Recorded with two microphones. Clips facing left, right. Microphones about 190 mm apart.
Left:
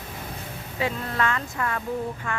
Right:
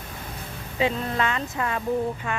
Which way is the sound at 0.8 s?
20° right (ahead or behind).